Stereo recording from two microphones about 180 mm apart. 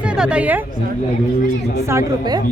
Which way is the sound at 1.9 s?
20° right (ahead or behind).